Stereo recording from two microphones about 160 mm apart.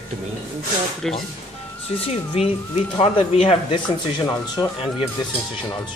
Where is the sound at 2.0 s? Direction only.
35° left (ahead or behind).